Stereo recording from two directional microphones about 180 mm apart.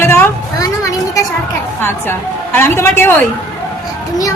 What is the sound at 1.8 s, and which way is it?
A woman's voice, 10° left (ahead or behind).